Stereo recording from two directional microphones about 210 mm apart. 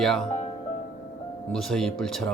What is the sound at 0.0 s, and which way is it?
Speech, 5° left (ahead or behind).